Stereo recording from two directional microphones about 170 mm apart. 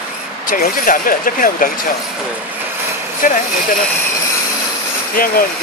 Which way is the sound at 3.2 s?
50° left (ahead or behind).